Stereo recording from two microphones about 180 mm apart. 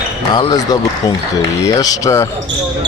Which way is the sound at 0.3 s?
25° left (ahead or behind).